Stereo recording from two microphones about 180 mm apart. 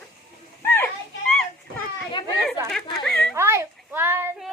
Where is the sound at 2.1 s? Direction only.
25° left (ahead or behind).